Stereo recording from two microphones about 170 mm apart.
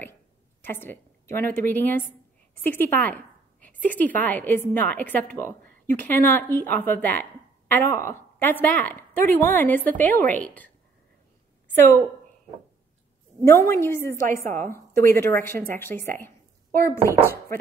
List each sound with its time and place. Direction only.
0.6 s a woman's voice: 15° left (ahead or behind)
11.7 s a woman's voice: 10° left (ahead or behind)
13.4 s a woman's voice: 15° left (ahead or behind)
14.4 s a woman's voice: 55° right (ahead or behind)
14.7 s a woman's voice: 15° left (ahead or behind)